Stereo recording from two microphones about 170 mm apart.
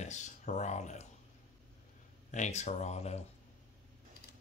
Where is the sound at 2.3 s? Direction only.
45° left (ahead or behind).